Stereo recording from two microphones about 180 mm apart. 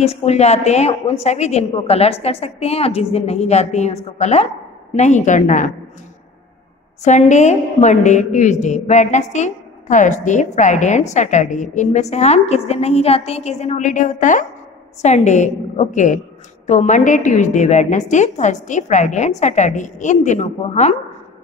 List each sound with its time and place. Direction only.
0.0 s a woman's voice: 35° left (ahead or behind)
7.0 s a woman's voice: 40° left (ahead or behind)